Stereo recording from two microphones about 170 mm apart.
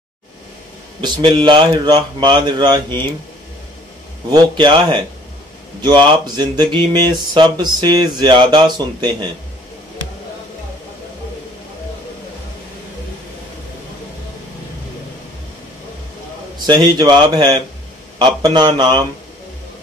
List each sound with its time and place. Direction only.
1.0 s speech: 25° right (ahead or behind)
4.3 s speech: 25° right (ahead or behind)
16.6 s speech: 25° right (ahead or behind)